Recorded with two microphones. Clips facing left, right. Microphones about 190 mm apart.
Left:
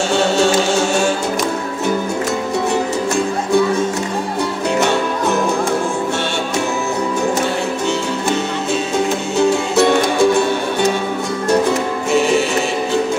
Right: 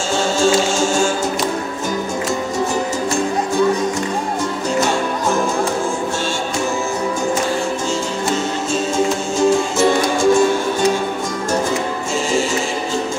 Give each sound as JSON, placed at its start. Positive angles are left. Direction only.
{"t": 0.1, "sound": "music", "side_deg": 65}
{"t": 8.9, "sound": "music", "side_deg": 65}
{"t": 12.1, "sound": "music", "side_deg": 65}